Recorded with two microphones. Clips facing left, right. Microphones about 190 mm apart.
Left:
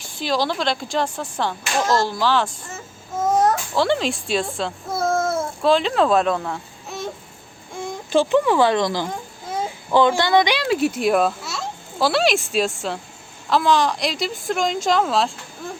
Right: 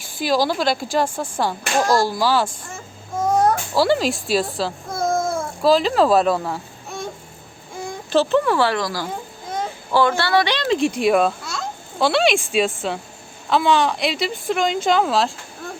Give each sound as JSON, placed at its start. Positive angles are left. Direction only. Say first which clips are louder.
{"t": 0.0, "sound": "speech", "louder": "right 3 dB", "side_deg": -5}
{"t": 2.7, "sound": "babbling", "louder": "even", "side_deg": 5}
{"t": 8.1, "sound": "a child's voice", "louder": "even", "side_deg": 15}